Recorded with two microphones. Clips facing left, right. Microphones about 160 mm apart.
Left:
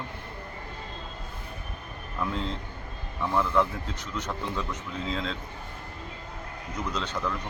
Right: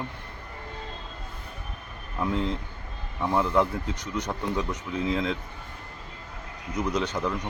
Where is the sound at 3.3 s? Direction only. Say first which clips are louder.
Right 2 dB; 15° right (ahead or behind).